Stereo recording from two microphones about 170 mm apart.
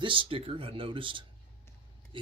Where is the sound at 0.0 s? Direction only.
30° right (ahead or behind).